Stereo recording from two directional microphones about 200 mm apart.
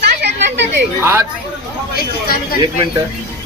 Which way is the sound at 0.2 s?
60° right (ahead or behind).